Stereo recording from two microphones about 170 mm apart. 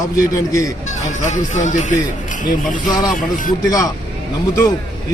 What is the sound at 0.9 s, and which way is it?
Speech, 45° left (ahead or behind).